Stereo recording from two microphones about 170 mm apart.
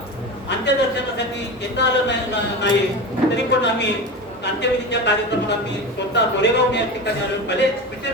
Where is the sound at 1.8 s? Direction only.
90° left.